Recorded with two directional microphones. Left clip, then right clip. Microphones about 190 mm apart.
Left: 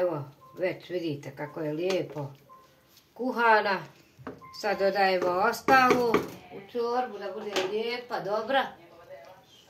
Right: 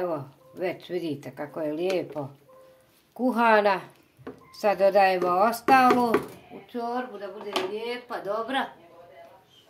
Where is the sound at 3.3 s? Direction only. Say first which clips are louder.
Right 3 dB; 60° right (ahead or behind).